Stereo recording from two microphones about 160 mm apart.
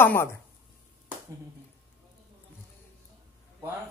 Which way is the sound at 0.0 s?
15° left (ahead or behind).